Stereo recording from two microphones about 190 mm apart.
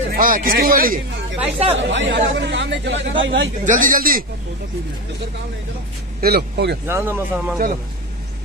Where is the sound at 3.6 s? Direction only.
45° right (ahead or behind).